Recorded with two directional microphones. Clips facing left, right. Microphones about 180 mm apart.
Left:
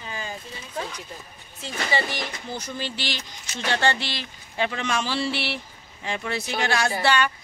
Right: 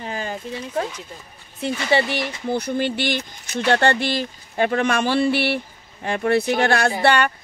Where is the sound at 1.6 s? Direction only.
60° right (ahead or behind).